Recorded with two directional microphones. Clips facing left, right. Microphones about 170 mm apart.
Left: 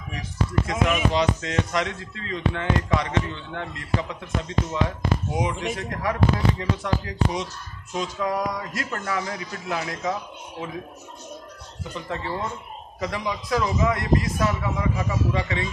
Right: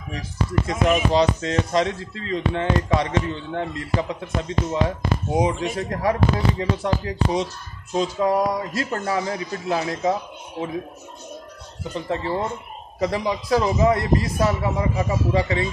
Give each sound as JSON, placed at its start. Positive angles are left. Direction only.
{"t": 0.7, "sound": "speech", "side_deg": -35}
{"t": 11.9, "sound": "speech", "side_deg": -30}